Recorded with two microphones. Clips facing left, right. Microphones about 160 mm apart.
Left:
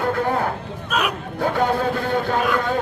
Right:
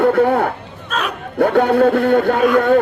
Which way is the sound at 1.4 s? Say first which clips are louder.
Right 8 dB; 65° right (ahead or behind).